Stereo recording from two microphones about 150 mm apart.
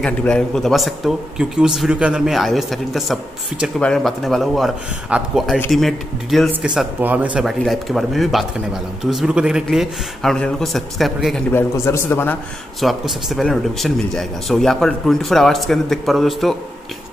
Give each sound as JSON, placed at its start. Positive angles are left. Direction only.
{"t": 0.0, "sound": "speech", "side_deg": 5}
{"t": 11.5, "sound": "a man's voice", "side_deg": 20}
{"t": 12.8, "sound": "speech", "side_deg": 0}